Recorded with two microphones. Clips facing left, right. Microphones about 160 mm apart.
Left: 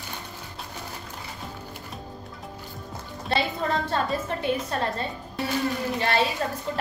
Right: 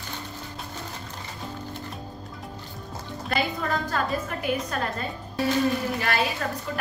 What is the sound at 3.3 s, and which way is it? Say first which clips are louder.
A woman's voice: left 1 dB; 30° left (ahead or behind).